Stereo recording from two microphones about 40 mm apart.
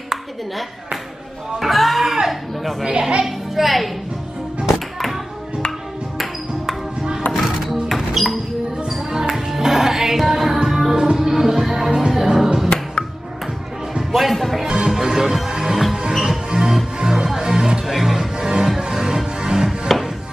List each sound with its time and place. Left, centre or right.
1.6 s music: centre
2.8 s a woman's voice: right
3.5 s a woman's voice: centre
4.6 s music: centre
7.3 s music: centre
14.1 s speech: centre
14.9 s music: centre
16.1 s music: centre
16.4 s music: centre